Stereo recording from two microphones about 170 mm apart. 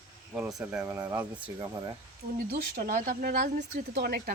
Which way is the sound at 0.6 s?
10° right (ahead or behind).